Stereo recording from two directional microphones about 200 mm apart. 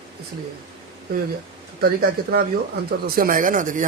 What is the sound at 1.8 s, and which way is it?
Speech, 50° right (ahead or behind).